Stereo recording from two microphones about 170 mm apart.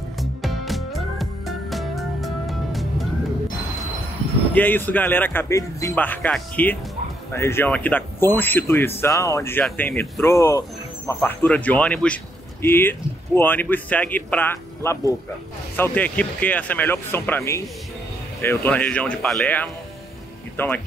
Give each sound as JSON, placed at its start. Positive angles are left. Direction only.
{"t": 0.2, "sound": "music", "side_deg": 0}
{"t": 4.6, "sound": "speech", "side_deg": 10}